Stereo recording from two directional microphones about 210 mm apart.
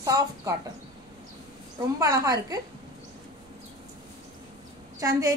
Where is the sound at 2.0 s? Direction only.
15° right (ahead or behind).